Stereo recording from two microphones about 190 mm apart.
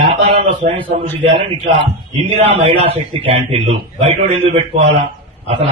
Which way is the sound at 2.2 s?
30° right (ahead or behind).